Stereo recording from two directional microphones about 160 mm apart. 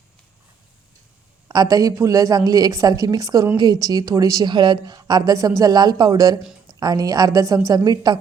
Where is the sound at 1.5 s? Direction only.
20° right (ahead or behind).